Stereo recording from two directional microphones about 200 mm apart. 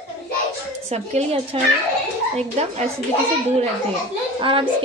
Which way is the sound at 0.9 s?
30° right (ahead or behind).